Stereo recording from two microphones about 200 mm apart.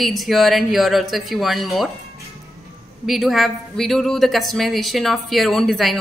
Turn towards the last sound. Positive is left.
turn(degrees=0)  # may be behind; listen again after turning